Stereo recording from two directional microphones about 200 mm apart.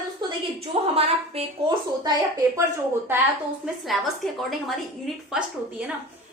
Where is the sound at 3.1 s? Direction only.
10° right (ahead or behind).